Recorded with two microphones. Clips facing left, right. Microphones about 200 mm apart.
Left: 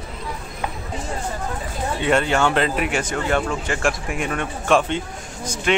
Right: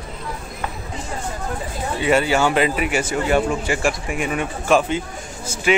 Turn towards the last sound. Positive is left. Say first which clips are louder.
# right 2 dB
turn(degrees=-5)  # may be behind; listen again after turning